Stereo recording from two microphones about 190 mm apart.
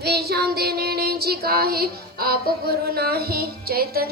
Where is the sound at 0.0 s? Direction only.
55° right (ahead or behind).